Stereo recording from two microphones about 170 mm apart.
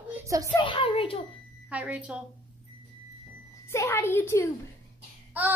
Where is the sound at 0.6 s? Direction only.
30° left (ahead or behind).